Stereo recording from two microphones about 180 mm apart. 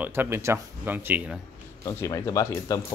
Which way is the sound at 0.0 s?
10° right (ahead or behind).